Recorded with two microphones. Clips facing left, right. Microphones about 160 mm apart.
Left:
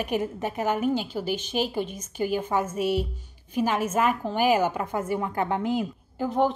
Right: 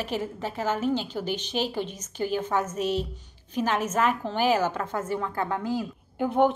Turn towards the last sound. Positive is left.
turn(degrees=0)  # may be behind; listen again after turning